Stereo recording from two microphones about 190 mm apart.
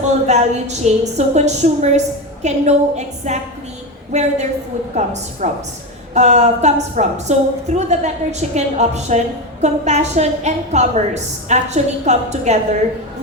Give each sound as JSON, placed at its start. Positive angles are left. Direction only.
{"t": 0.3, "sound": "a woman's voice", "side_deg": -35}